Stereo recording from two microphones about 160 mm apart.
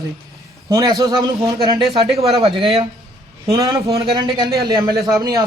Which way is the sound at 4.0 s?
30° right (ahead or behind).